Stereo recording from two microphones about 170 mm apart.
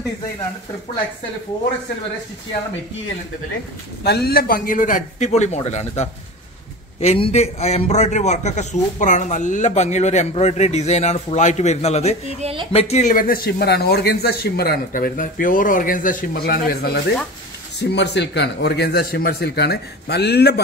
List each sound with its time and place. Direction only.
4.0 s a man's voice: 70° left (ahead or behind); by 12.2 s 40° left (ahead or behind)
12.4 s speech: 35° right (ahead or behind)
12.7 s speech: 40° left (ahead or behind); by 17.0 s 65° left (ahead or behind)
17.7 s a man's voice: 85° left